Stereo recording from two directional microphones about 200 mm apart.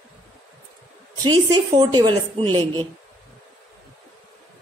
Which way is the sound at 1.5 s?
20° right (ahead or behind).